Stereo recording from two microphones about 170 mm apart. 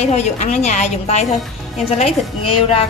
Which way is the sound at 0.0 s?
40° left (ahead or behind).